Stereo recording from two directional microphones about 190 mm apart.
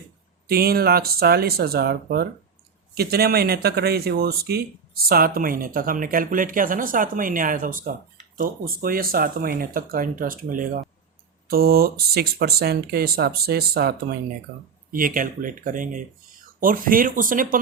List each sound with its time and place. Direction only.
0.4 s speech: 55° right (ahead or behind)